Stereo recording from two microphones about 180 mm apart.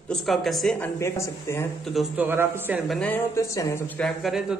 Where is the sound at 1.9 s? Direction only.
10° right (ahead or behind).